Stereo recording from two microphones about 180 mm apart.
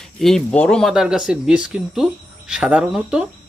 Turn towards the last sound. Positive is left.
turn(degrees=-5)  # may be behind; listen again after turning